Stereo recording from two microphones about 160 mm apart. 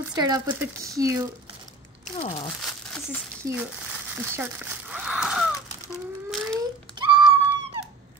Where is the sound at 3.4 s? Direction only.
20° right (ahead or behind).